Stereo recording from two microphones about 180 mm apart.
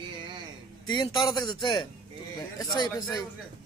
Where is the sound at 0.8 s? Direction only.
25° left (ahead or behind).